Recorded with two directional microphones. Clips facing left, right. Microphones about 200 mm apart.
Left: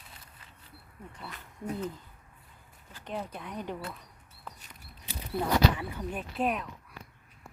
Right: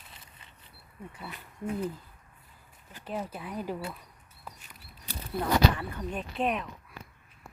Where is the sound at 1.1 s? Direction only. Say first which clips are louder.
Right 1 dB; 10° right (ahead or behind).